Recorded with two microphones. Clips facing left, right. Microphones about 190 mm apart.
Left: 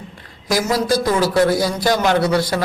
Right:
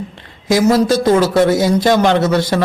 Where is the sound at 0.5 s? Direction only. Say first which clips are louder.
Right 6 dB; 25° right (ahead or behind).